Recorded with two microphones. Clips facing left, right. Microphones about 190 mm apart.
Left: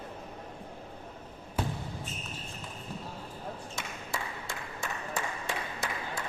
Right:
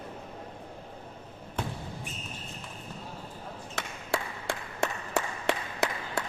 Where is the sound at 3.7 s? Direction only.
70° right (ahead or behind).